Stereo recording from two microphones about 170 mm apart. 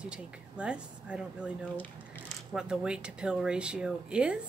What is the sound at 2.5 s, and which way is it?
Speech, 5° right (ahead or behind).